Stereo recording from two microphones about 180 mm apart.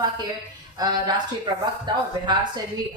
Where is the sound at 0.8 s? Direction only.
25° right (ahead or behind).